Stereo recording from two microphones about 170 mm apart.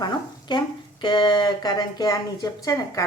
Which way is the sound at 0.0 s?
25° left (ahead or behind).